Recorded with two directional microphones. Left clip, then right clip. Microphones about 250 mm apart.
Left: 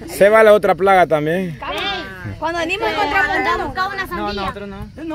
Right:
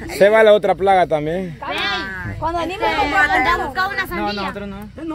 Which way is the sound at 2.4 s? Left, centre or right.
Left.